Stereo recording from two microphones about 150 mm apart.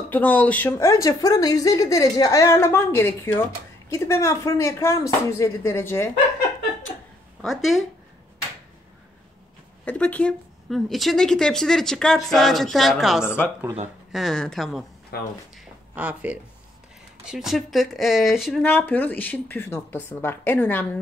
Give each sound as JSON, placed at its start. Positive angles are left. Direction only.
{"t": 0.1, "sound": "speech", "side_deg": 10}
{"t": 7.4, "sound": "speech", "side_deg": 0}
{"t": 9.8, "sound": "speech", "side_deg": 10}
{"t": 13.2, "sound": "speech", "side_deg": 15}
{"t": 14.1, "sound": "speech", "side_deg": 0}
{"t": 15.5, "sound": "a sound", "side_deg": -10}
{"t": 17.3, "sound": "speech", "side_deg": -5}
{"t": 18.6, "sound": "speech", "side_deg": 15}